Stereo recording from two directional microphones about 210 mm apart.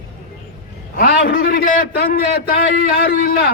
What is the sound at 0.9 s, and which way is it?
Speech, 45° left (ahead or behind).